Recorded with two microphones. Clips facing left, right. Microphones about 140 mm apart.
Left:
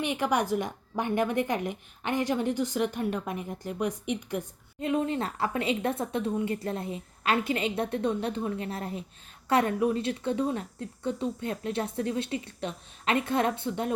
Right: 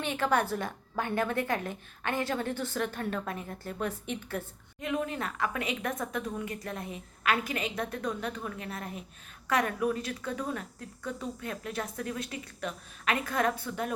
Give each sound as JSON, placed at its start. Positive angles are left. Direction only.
{"t": 0.0, "sound": "a woman's voice", "side_deg": 15}
{"t": 4.8, "sound": "speech", "side_deg": 30}